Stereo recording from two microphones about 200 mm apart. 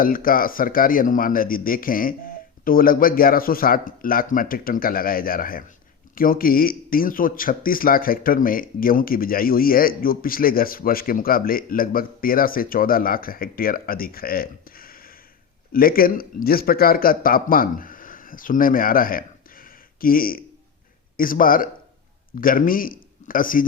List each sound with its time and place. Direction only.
0.0 s a man's voice: 45° left (ahead or behind)